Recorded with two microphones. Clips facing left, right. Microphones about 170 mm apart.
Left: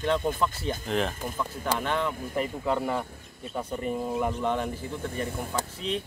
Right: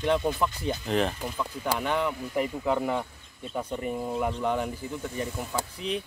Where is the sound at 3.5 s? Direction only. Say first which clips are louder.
Right 1 dB; 10° left (ahead or behind).